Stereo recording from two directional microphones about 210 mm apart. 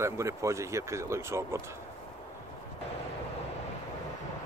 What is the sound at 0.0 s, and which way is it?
Speech, 15° right (ahead or behind).